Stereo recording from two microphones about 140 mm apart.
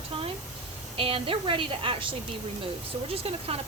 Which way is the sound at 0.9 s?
40° right (ahead or behind).